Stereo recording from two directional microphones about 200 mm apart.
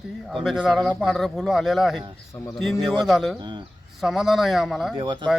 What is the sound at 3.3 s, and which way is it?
Speech, 20° right (ahead or behind).